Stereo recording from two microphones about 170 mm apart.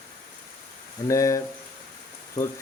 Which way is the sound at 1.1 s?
20° left (ahead or behind).